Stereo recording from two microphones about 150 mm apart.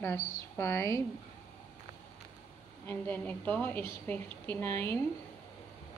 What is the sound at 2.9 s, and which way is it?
A woman's voice, 10° left (ahead or behind).